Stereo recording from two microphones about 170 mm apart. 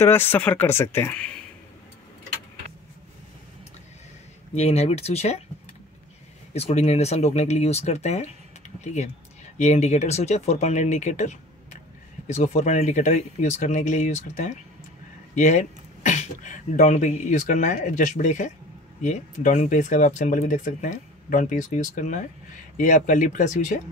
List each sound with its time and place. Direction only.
0.0 s speech: 15° left (ahead or behind)
4.6 s speech: 40° left (ahead or behind)
6.5 s speech: 40° left (ahead or behind)